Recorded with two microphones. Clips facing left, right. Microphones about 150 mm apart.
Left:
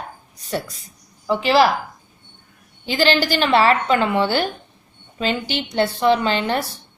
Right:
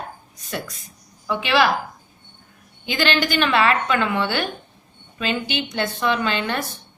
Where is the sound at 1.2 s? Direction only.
30° left (ahead or behind).